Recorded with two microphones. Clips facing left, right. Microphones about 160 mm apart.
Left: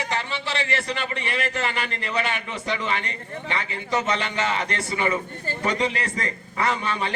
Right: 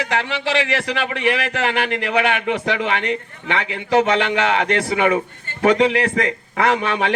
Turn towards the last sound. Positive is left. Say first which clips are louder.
# right 6 dB
turn(degrees=-75)  # may be behind; listen again after turning